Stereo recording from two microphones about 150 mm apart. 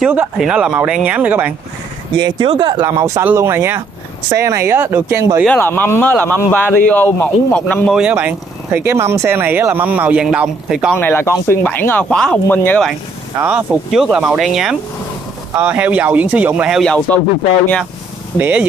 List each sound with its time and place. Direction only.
0.0 s speech: 5° right (ahead or behind)
2.1 s speech: 30° right (ahead or behind)
3.0 s speech: 20° right (ahead or behind)
5.5 s speech: 15° left (ahead or behind)
7.9 s speech: 10° right (ahead or behind)
11.0 s speech: 15° left (ahead or behind)
13.4 s speech: 10° right (ahead or behind); by 17.2 s 5° left (ahead or behind)
18.4 s speech: 10° right (ahead or behind)